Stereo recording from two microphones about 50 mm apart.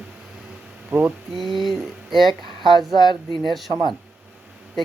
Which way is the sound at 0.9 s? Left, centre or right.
Right.